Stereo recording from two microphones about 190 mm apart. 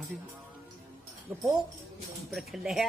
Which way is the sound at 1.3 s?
10° right (ahead or behind).